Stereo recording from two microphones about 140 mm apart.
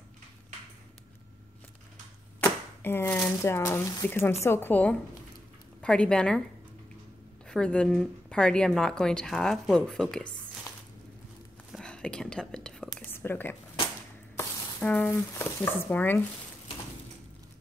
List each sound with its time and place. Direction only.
2.4 s a woman's voice: 15° left (ahead or behind)
7.4 s a woman's voice: 5° left (ahead or behind)
11.7 s whispering: 5° left (ahead or behind)
13.1 s a sound: 15° left (ahead or behind)
14.3 s speech: 10° left (ahead or behind)